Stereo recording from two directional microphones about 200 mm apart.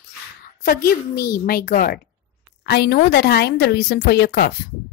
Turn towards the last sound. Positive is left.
turn(degrees=50)  # may be behind; listen again after turning